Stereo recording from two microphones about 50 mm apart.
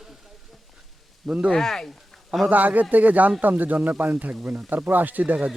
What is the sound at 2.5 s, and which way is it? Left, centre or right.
Speech, right.